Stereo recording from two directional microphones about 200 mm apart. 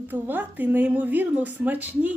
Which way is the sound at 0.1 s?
10° right (ahead or behind).